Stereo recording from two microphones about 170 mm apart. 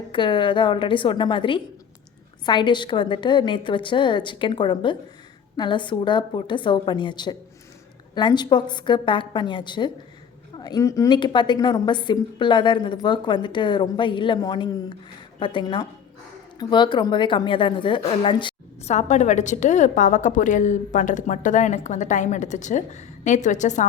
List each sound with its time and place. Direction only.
0.1 s a woman's voice: 30° left (ahead or behind)
18.9 s a woman's voice: 45° left (ahead or behind)